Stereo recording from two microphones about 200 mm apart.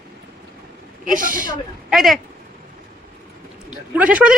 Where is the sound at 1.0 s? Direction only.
40° right (ahead or behind).